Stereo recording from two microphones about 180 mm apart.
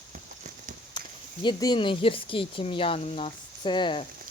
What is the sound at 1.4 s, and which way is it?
Speech, 25° left (ahead or behind).